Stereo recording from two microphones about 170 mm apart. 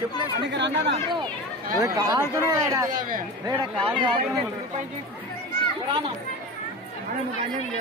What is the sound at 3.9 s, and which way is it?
Speech, 35° right (ahead or behind).